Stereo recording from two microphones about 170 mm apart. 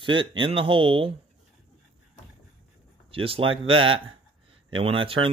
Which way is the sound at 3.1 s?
30° right (ahead or behind).